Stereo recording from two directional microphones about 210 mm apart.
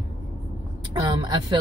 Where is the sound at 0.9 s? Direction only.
20° right (ahead or behind).